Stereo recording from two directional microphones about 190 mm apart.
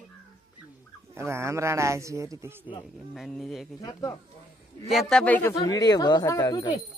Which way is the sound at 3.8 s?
15° left (ahead or behind).